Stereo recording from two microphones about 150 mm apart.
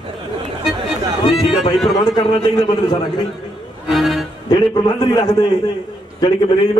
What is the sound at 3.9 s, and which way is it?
Music, centre (ahead or behind).